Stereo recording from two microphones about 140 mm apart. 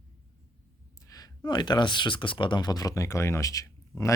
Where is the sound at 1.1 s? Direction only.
25° left (ahead or behind).